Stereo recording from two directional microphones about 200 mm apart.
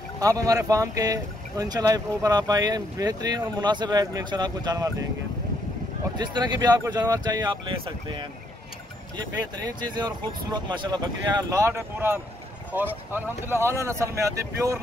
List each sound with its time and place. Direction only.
0.2 s speech: 15° right (ahead or behind)
6.1 s speech: 20° right (ahead or behind)
9.6 s speech: 20° right (ahead or behind)